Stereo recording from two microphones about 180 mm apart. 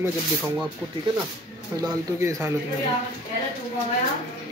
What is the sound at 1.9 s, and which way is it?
Speech, 15° right (ahead or behind).